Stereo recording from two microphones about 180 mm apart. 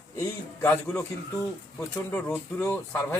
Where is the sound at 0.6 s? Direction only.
10° left (ahead or behind).